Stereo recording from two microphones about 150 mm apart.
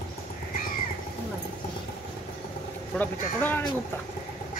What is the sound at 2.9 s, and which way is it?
Speech, 10° left (ahead or behind).